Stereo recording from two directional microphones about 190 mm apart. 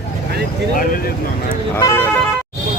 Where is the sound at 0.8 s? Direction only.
50° left (ahead or behind).